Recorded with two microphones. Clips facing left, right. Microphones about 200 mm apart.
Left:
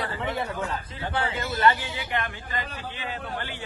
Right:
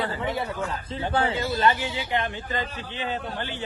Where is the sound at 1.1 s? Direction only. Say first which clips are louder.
Right 4 dB; 30° right (ahead or behind).